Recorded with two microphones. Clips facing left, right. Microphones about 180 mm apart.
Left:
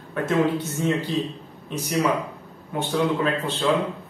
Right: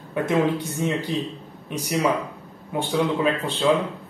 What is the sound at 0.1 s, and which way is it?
Speech, 15° right (ahead or behind).